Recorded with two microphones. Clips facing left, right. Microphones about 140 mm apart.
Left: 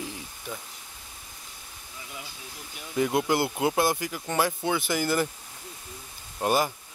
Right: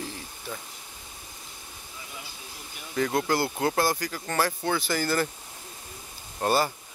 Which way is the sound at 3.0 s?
15° left (ahead or behind).